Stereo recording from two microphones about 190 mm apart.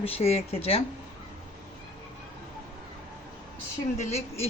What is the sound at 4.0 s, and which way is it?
Speech, 35° left (ahead or behind).